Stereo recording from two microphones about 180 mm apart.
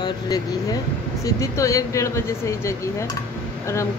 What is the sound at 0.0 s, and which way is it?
Speech, 20° left (ahead or behind).